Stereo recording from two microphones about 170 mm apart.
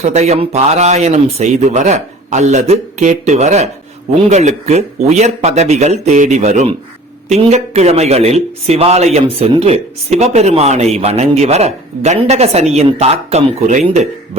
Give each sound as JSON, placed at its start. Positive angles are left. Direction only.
{"t": 0.0, "sound": "speech", "side_deg": -40}